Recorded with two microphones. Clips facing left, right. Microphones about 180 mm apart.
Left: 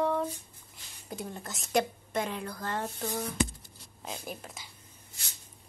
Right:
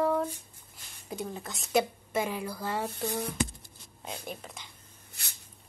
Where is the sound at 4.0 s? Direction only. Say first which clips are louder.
Even; centre (ahead or behind).